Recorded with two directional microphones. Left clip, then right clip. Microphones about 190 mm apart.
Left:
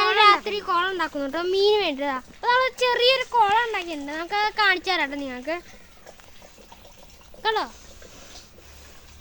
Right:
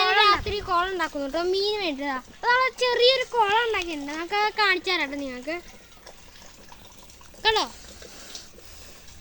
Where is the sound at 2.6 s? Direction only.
30° left (ahead or behind).